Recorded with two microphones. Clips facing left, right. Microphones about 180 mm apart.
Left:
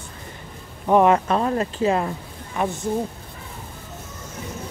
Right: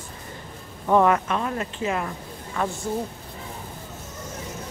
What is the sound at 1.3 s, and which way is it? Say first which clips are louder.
Speech: left 5 dB; 35° left (ahead or behind).